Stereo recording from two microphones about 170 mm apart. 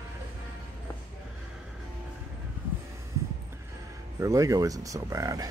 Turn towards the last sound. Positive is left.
turn(degrees=-20)  # may be behind; listen again after turning